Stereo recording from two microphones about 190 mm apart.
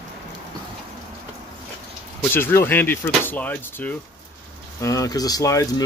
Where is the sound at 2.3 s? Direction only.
10° left (ahead or behind).